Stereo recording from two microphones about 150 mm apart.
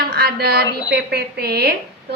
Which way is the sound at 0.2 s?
90° right.